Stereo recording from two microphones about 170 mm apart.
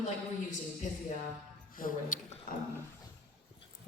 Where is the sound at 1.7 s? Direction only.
55° left (ahead or behind).